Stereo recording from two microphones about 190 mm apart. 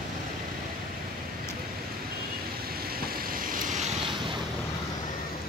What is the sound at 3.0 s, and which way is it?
Vehicle, 45° right (ahead or behind).